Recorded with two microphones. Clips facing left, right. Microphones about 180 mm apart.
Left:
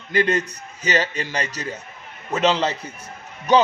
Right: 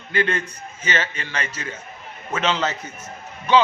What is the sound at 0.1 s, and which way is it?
A man's voice, 40° left (ahead or behind).